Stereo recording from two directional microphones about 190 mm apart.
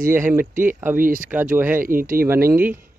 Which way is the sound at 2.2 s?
10° right (ahead or behind).